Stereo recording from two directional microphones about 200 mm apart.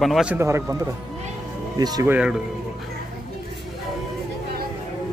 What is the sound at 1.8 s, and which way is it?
Speech, 20° right (ahead or behind).